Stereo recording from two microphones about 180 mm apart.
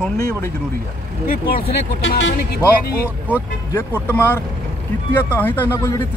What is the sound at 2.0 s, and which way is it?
Speech, 70° left (ahead or behind).